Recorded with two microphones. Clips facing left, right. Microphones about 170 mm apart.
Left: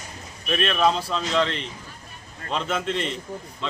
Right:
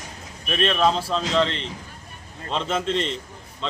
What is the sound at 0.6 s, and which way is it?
Speech, 5° left (ahead or behind).